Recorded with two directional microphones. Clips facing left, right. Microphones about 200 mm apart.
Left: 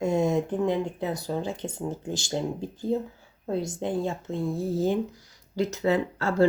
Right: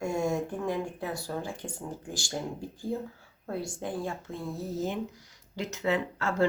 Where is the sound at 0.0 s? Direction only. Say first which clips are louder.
Left 5 dB; 20° left (ahead or behind).